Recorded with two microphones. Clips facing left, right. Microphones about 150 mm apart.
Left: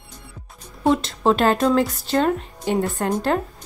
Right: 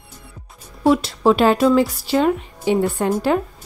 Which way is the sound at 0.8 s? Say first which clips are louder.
Right 3 dB; 5° right (ahead or behind).